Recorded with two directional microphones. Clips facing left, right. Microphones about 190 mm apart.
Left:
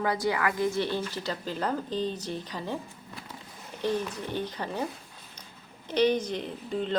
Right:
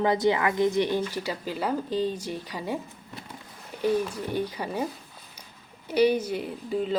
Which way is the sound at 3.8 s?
10° right (ahead or behind).